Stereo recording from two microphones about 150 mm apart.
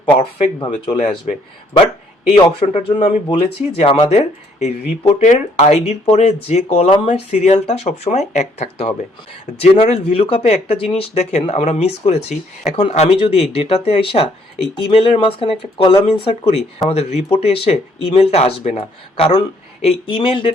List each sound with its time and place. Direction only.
0.2 s speech: 40° left (ahead or behind)
2.3 s speech: 40° left (ahead or behind)
5.2 s speech: 55° left (ahead or behind); by 20.5 s 35° left (ahead or behind)